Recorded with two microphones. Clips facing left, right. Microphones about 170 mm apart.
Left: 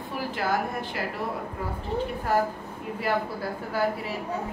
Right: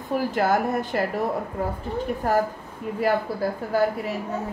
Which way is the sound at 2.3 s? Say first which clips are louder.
Right 3 dB; 45° right (ahead or behind).